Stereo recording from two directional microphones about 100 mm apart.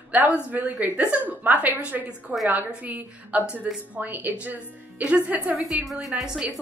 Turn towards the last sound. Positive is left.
turn(degrees=-5)  # may be behind; listen again after turning